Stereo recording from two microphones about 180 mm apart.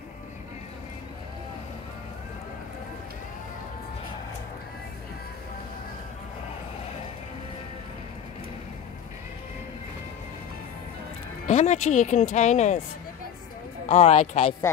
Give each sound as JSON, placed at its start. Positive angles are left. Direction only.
{"t": 11.4, "sound": "speech", "side_deg": 40}
{"t": 13.8, "sound": "speech", "side_deg": 35}